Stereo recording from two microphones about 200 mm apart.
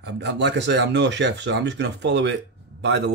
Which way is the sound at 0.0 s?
60° right (ahead or behind).